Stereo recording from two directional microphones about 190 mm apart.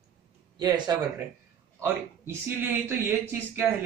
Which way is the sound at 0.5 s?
20° right (ahead or behind).